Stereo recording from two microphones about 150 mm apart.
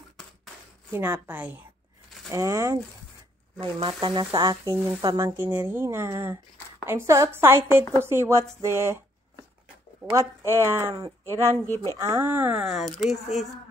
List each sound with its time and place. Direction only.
0.9 s speech: 10° right (ahead or behind)
2.3 s speech: 20° right (ahead or behind)
3.5 s speech: 30° right (ahead or behind)
10.1 s speech: 15° right (ahead or behind)
11.6 s speech: 20° left (ahead or behind)
12.0 s speech: 15° right (ahead or behind)